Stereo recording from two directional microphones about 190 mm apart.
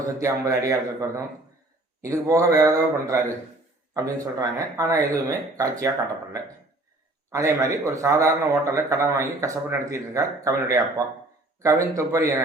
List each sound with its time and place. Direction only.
0.2 s speech: 15° right (ahead or behind)
7.3 s speech: 15° right (ahead or behind)